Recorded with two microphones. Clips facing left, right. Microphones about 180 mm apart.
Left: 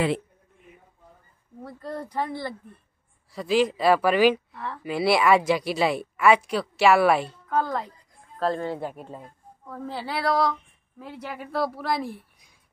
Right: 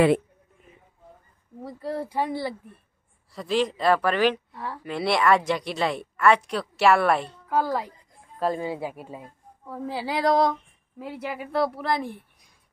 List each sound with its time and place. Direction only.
1.6 s a woman's voice: 10° right (ahead or behind)
3.3 s speech: 5° left (ahead or behind)
7.4 s a woman's voice: 10° right (ahead or behind)
11.0 s speech: 10° right (ahead or behind)